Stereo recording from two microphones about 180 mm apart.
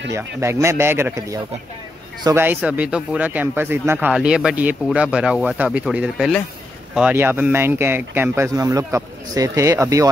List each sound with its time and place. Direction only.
0.1 s speech: 15° right (ahead or behind)